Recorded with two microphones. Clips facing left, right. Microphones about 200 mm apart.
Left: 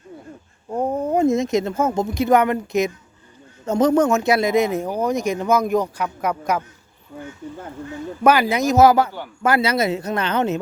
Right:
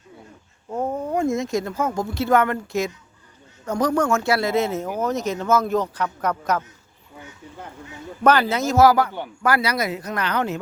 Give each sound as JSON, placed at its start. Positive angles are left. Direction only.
{"t": 0.7, "sound": "speech", "side_deg": 15}
{"t": 8.2, "sound": "speech", "side_deg": 10}